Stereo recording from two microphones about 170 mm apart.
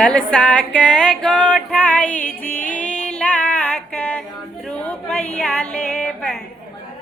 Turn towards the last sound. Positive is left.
turn(degrees=5)  # may be behind; listen again after turning